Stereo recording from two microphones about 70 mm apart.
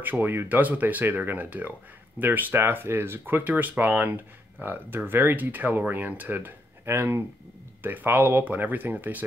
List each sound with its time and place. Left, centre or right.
0.0 s speech: right